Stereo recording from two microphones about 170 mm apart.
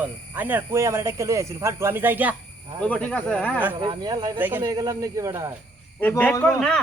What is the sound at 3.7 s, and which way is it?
Speech, 25° right (ahead or behind).